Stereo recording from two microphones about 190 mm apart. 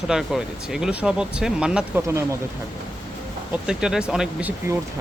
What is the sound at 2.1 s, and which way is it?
Speech, 15° right (ahead or behind).